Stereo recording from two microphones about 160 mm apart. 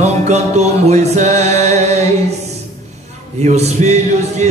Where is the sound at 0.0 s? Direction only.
45° right (ahead or behind).